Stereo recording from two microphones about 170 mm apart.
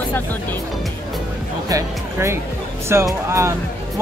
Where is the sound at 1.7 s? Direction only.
20° right (ahead or behind).